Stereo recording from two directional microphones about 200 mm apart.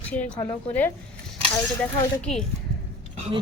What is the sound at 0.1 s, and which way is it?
Speech, 5° left (ahead or behind).